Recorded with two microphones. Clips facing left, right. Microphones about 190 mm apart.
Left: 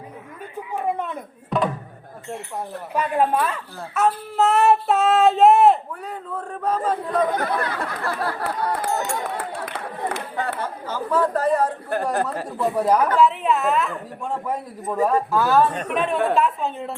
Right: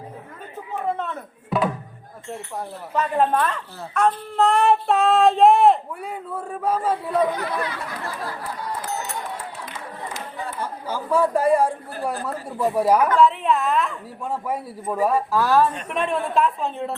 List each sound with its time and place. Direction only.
0.7 s a man's voice: 15° left (ahead or behind)
1.5 s music: 5° right (ahead or behind)
2.6 s speech: 10° left (ahead or behind)
6.0 s a man's voice: 10° right (ahead or behind)
7.3 s speech: 50° left (ahead or behind); by 10.6 s 65° left (ahead or behind)
10.6 s a man's voice: 10° right (ahead or behind)